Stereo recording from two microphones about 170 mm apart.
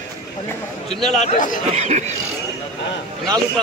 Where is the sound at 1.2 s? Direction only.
45° left (ahead or behind).